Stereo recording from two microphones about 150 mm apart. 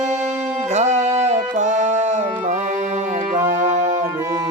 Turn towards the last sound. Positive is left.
turn(degrees=-55)  # may be behind; listen again after turning